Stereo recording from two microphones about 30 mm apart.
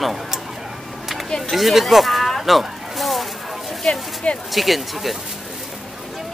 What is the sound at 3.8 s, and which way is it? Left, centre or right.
Speech, left.